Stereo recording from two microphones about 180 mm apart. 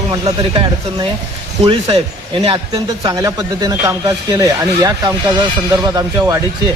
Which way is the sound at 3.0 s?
20° right (ahead or behind).